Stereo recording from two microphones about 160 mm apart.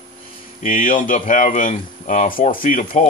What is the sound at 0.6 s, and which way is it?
Speech, 55° left (ahead or behind).